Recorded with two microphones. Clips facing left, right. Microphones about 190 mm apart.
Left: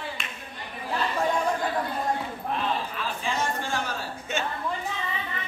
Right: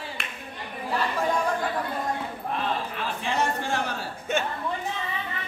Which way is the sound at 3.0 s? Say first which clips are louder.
Right 2 dB; 65° right (ahead or behind).